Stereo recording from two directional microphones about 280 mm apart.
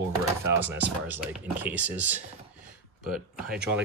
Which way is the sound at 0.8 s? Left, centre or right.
Centre.